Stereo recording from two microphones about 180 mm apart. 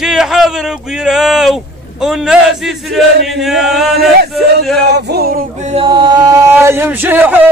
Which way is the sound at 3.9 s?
60° right (ahead or behind).